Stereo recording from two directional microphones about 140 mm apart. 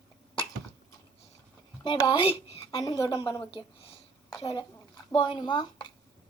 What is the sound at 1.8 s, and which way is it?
Speech, 30° left (ahead or behind).